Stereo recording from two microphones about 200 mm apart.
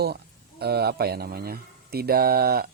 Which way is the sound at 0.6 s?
55° right (ahead or behind).